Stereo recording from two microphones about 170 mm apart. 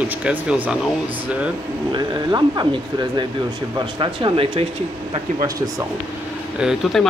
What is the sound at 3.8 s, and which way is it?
Speech, 25° right (ahead or behind).